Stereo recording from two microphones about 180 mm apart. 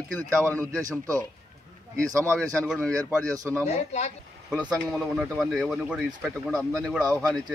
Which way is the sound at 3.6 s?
40° left (ahead or behind).